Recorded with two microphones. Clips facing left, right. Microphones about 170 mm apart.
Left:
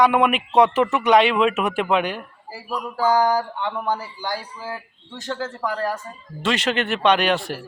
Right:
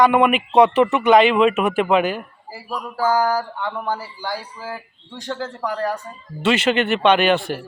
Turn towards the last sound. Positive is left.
turn(degrees=0)  # may be behind; listen again after turning